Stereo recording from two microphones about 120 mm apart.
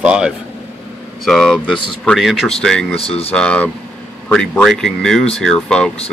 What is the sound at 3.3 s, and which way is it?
Speech, 10° left (ahead or behind).